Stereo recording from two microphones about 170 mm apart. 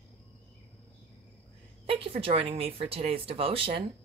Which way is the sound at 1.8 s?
35° right (ahead or behind).